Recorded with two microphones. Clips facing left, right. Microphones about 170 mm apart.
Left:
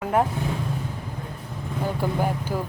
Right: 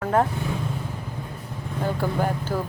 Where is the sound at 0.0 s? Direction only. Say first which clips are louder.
Right 1 dB; 15° left (ahead or behind).